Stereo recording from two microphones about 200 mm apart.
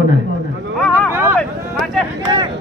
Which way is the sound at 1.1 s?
10° right (ahead or behind).